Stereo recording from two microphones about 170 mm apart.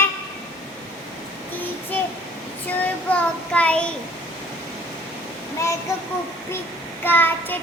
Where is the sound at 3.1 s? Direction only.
10° left (ahead or behind).